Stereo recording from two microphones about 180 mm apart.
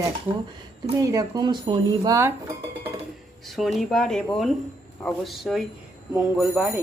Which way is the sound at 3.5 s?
Centre (ahead or behind).